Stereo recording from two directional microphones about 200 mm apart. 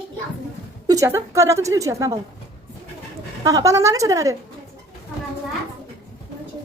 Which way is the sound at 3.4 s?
15° right (ahead or behind).